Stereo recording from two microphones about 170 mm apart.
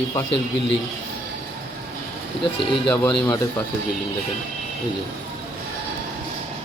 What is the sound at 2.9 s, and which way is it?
Speech, 5° left (ahead or behind).